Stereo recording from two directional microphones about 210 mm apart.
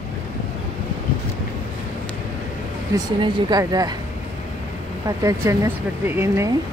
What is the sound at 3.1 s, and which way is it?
Speech, 20° right (ahead or behind).